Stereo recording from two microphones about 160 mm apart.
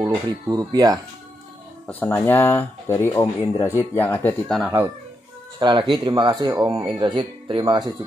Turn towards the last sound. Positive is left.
turn(degrees=-25)  # may be behind; listen again after turning